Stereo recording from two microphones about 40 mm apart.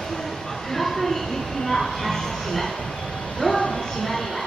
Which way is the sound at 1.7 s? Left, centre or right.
Centre.